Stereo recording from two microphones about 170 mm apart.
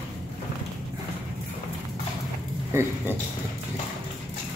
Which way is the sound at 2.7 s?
15° right (ahead or behind).